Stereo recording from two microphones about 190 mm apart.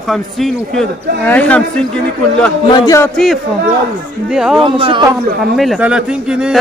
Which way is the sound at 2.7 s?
15° left (ahead or behind).